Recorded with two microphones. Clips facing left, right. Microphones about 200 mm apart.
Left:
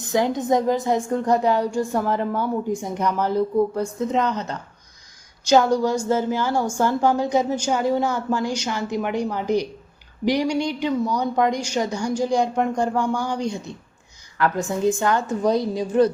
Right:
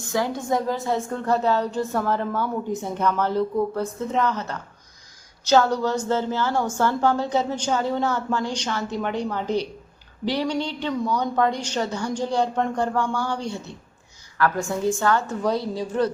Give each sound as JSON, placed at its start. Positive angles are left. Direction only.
{"t": 0.0, "sound": "a woman's voice", "side_deg": 20}